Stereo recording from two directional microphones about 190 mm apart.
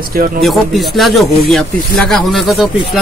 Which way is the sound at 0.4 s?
Centre (ahead or behind).